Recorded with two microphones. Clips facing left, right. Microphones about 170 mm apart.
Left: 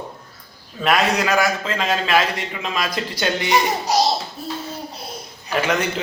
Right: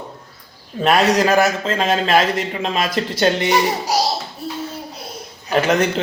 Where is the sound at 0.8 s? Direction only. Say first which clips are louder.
Right 4 dB; 40° right (ahead or behind).